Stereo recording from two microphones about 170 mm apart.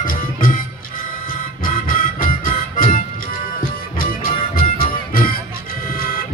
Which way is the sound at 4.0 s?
60° left (ahead or behind).